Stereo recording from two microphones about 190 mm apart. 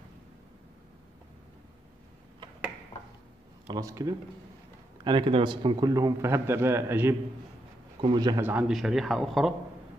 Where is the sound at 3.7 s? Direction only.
15° right (ahead or behind).